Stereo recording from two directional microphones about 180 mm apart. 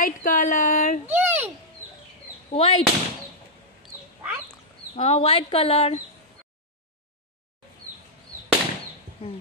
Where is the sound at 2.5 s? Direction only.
35° left (ahead or behind).